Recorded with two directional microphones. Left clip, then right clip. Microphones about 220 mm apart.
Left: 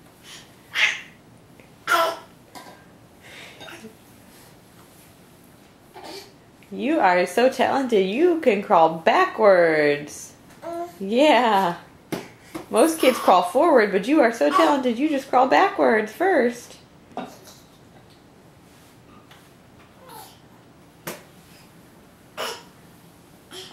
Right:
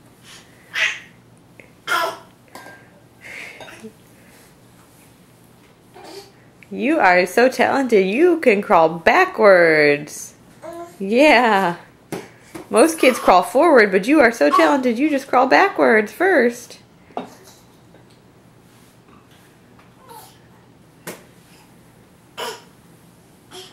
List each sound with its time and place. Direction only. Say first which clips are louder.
6.7 s speech: right 4 dB; 15° right (ahead or behind)
12.7 s speech: right 4 dB; 15° right (ahead or behind)